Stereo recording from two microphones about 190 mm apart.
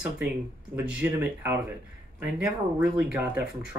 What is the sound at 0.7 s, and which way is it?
Speech, 5° right (ahead or behind).